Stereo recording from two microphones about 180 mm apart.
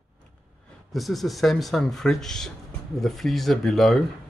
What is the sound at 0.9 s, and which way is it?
Speech, centre (ahead or behind).